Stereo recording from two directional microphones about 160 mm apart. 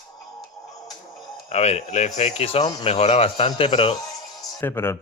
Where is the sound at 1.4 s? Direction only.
45° left (ahead or behind).